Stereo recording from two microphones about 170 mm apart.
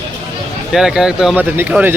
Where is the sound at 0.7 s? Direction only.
5° right (ahead or behind).